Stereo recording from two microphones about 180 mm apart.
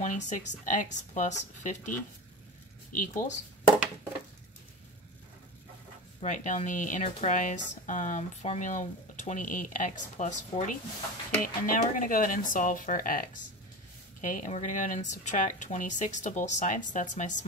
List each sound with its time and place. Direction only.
0.0 s speech: 45° left (ahead or behind)
6.2 s speech: 45° left (ahead or behind)